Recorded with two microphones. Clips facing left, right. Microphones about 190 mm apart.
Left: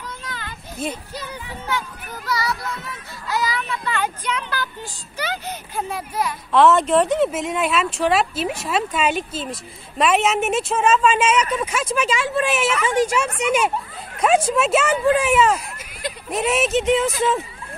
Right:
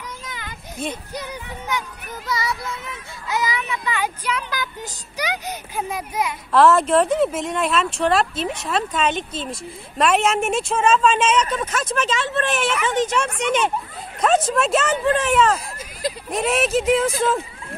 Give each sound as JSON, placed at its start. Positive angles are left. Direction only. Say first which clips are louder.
{"t": 0.3, "sound": "children playing", "louder": "left 1 dB", "side_deg": -15}
{"t": 0.8, "sound": "a woman's voice", "louder": "left 1 dB", "side_deg": 5}
{"t": 1.1, "sound": "speech", "louder": "right 1 dB", "side_deg": -15}
{"t": 6.5, "sound": "a woman's voice", "louder": "even", "side_deg": 0}